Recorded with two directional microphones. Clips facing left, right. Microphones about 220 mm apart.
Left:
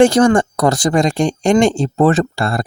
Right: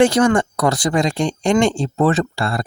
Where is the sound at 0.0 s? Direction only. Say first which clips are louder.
Left 3 dB; 45° left (ahead or behind).